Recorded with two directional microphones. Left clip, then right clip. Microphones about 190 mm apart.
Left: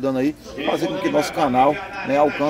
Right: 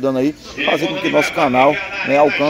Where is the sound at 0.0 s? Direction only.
20° right (ahead or behind).